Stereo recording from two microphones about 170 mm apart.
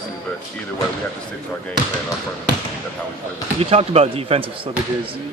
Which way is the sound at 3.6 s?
35° right (ahead or behind).